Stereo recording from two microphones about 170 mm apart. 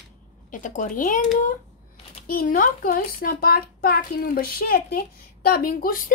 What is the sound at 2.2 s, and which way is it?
A child's voice, 55° left (ahead or behind).